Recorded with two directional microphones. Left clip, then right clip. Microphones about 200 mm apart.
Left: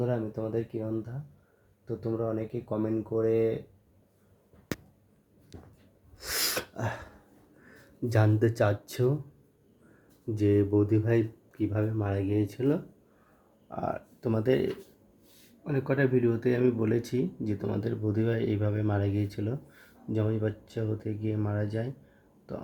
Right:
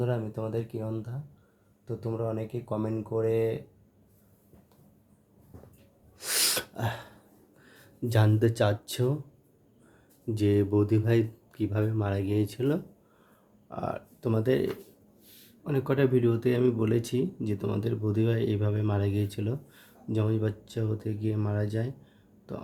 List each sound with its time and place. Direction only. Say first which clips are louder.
0.0 s speech: left 1 dB; 5° left (ahead or behind)
6.1 s sneeze: right 3 dB; centre (ahead or behind)
7.7 s speech: even; 5° left (ahead or behind)
10.3 s speech: even; centre (ahead or behind)
15.7 s speech: right 1 dB; 5° right (ahead or behind)